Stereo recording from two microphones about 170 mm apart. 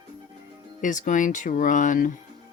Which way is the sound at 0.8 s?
50° left (ahead or behind).